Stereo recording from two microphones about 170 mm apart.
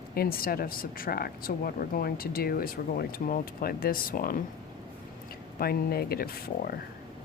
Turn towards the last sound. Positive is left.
turn(degrees=60)  # may be behind; listen again after turning